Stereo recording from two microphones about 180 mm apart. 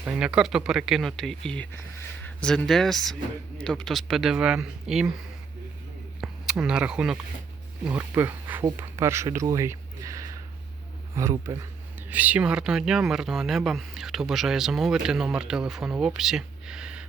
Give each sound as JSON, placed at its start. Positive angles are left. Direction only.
{"t": 0.0, "sound": "speech", "side_deg": -5}
{"t": 6.2, "sound": "speech", "side_deg": -5}